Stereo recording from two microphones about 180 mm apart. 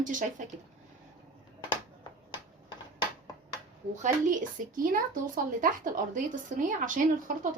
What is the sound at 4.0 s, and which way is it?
Speech, 45° right (ahead or behind).